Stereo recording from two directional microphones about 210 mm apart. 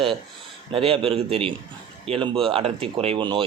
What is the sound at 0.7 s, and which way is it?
A man's voice, 25° right (ahead or behind).